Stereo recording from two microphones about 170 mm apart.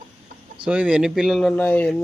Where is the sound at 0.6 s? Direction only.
10° right (ahead or behind).